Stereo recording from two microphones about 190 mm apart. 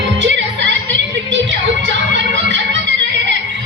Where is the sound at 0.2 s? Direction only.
70° right (ahead or behind).